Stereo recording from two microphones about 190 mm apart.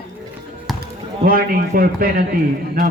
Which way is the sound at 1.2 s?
50° right (ahead or behind).